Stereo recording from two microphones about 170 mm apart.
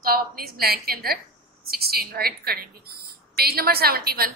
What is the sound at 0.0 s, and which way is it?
A woman's voice, 60° right (ahead or behind).